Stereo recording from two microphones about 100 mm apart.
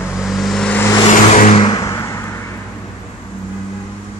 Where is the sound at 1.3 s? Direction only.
90° left.